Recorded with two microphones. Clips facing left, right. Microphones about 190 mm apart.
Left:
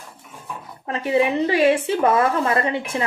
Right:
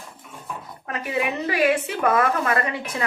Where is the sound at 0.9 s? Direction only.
30° left (ahead or behind).